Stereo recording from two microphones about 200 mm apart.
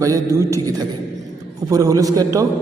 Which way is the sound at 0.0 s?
15° right (ahead or behind).